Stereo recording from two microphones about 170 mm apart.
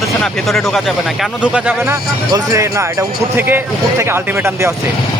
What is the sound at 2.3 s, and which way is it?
Speech, 20° right (ahead or behind).